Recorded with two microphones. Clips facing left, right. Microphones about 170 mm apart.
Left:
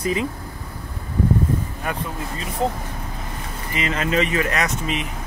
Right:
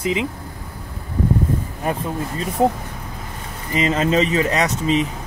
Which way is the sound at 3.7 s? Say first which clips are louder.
Right 5 dB; 35° right (ahead or behind).